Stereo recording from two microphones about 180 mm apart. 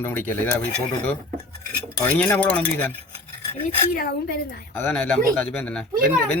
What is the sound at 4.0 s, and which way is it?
Speech, 60° left (ahead or behind).